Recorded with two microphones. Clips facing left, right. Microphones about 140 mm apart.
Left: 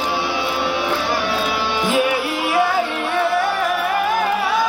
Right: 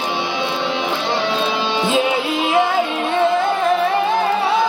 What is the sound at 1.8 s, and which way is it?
Music, 20° right (ahead or behind).